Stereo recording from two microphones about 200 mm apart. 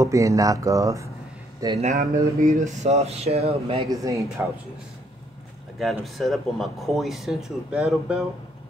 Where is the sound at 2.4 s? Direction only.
45° right (ahead or behind).